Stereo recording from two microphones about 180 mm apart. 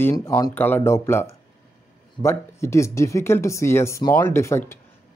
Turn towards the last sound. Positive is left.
turn(degrees=15)  # may be behind; listen again after turning